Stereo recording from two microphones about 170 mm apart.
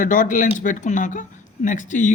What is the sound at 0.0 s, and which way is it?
Speech, 50° left (ahead or behind).